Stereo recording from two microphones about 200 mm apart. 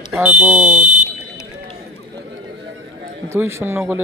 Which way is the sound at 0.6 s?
35° right (ahead or behind).